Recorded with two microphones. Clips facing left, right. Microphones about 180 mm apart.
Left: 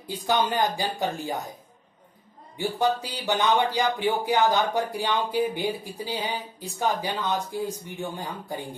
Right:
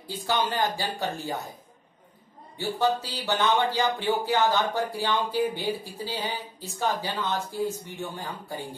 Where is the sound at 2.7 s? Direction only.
15° left (ahead or behind).